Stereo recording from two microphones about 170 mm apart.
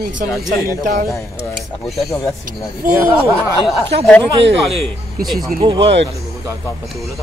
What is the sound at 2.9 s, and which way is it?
Speech, 15° right (ahead or behind).